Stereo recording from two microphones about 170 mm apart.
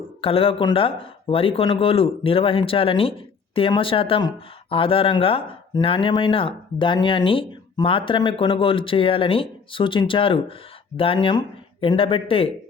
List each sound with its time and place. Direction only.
0.2 s speech: 35° left (ahead or behind)